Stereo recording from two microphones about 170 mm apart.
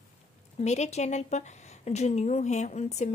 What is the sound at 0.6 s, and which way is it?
Speech, 40° left (ahead or behind).